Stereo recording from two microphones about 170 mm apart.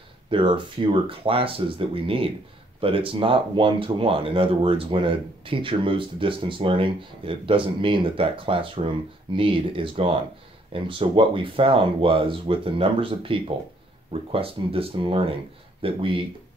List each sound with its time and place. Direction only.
0.3 s speech: 30° right (ahead or behind)